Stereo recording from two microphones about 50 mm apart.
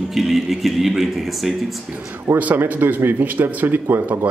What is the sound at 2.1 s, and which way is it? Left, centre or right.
Speech, right.